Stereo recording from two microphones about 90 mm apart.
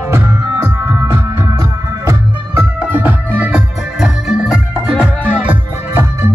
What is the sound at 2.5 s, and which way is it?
Music, 20° right (ahead or behind).